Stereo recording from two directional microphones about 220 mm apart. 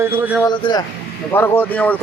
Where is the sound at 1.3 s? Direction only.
10° left (ahead or behind).